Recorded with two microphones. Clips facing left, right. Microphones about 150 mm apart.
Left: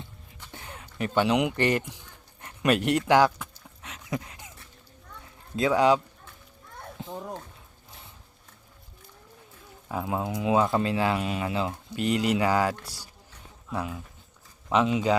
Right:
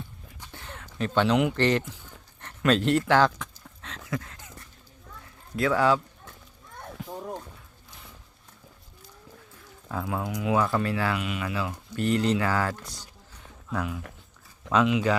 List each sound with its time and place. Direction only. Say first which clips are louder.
0.5 s speech: even; 15° left (ahead or behind)
2.4 s a sound: right 1 dB; 10° left (ahead or behind)
5.5 s speech: left 1 dB; 20° left (ahead or behind)
7.0 s a sound: left 1 dB; 25° left (ahead or behind)
9.9 s speech: left 1 dB; 20° left (ahead or behind)
13.7 s speech: right 1 dB; 25° left (ahead or behind)
14.7 s speech: even; 90° right